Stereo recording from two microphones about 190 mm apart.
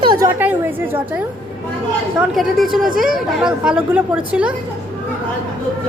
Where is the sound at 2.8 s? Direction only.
45° right (ahead or behind).